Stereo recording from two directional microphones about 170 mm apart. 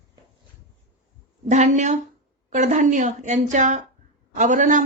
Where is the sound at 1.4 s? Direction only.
45° right (ahead or behind).